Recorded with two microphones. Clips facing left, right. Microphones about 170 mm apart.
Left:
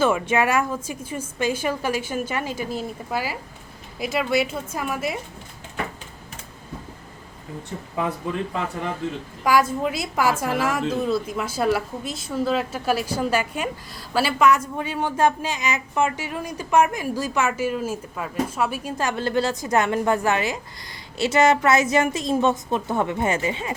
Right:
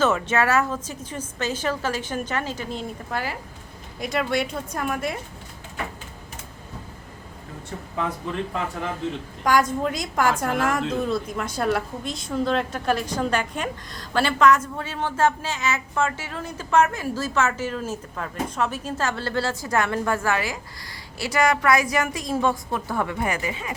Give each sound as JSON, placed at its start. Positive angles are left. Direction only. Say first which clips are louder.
{"t": 0.0, "sound": "a woman's voice", "louder": "left 1 dB", "side_deg": 10}
{"t": 9.4, "sound": "a woman's voice", "louder": "left 1 dB", "side_deg": 5}